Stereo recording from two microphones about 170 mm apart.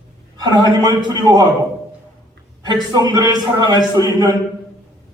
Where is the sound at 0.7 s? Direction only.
20° right (ahead or behind).